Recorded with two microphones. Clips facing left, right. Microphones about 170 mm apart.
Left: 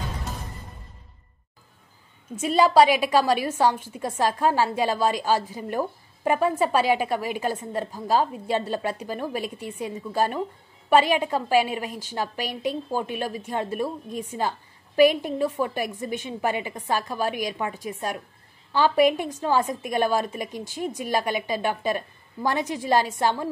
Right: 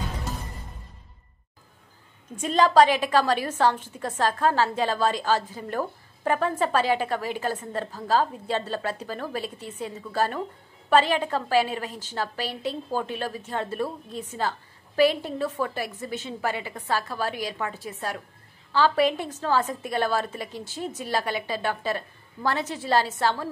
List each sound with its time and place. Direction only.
2.4 s a woman's voice: 10° left (ahead or behind)